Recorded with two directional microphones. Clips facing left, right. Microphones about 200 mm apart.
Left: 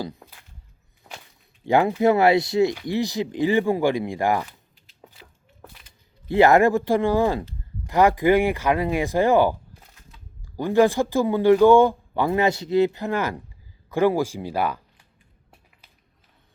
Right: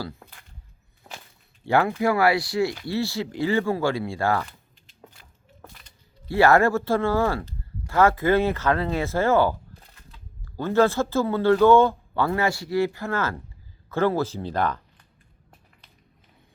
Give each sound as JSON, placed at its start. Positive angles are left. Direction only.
{"t": 0.0, "sound": "speech", "side_deg": 20}
{"t": 1.6, "sound": "speech", "side_deg": 15}
{"t": 6.2, "sound": "speech", "side_deg": 20}